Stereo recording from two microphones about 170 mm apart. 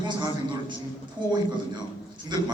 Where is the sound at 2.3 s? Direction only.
25° right (ahead or behind).